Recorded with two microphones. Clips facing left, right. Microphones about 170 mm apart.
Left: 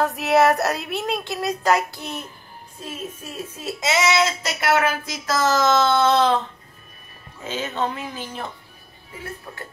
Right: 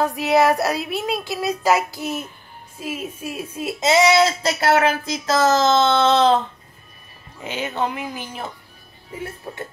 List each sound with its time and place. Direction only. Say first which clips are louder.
0.0 s speech: even; centre (ahead or behind)
3.8 s speech: right 5 dB; 30° right (ahead or behind)
7.4 s speech: right 1 dB; 15° right (ahead or behind)
9.5 s speech: right 5 dB; 25° right (ahead or behind)